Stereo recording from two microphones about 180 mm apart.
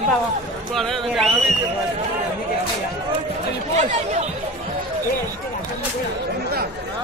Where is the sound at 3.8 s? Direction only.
40° right (ahead or behind).